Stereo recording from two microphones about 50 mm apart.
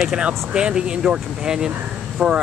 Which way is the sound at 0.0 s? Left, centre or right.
Centre.